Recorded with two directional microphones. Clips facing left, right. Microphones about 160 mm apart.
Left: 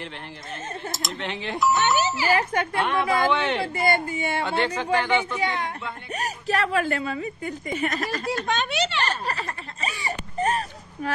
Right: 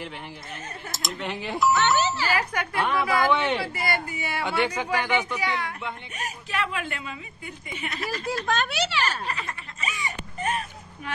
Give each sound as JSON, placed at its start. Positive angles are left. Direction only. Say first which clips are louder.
{"t": 0.9, "sound": "speech", "louder": "left 1 dB", "side_deg": 0}
{"t": 2.0, "sound": "a child's voice", "louder": "even", "side_deg": 10}
{"t": 2.3, "sound": "speech", "louder": "left 3 dB", "side_deg": 25}
{"t": 4.5, "sound": "a man's voice", "louder": "right 1 dB", "side_deg": -10}
{"t": 5.4, "sound": "speech", "louder": "left 2 dB", "side_deg": 25}
{"t": 6.1, "sound": "a woman's voice", "louder": "left 7 dB", "side_deg": 40}
{"t": 8.5, "sound": "speech", "louder": "right 1 dB", "side_deg": 0}
{"t": 9.2, "sound": "a sound", "louder": "left 3 dB", "side_deg": 35}